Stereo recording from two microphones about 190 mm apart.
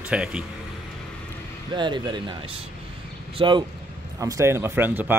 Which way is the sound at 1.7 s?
25° right (ahead or behind).